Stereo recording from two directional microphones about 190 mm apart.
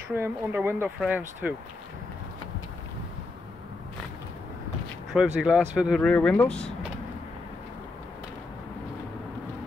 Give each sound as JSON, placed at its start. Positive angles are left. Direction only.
{"t": 0.1, "sound": "speech", "side_deg": -10}
{"t": 5.1, "sound": "speech", "side_deg": -5}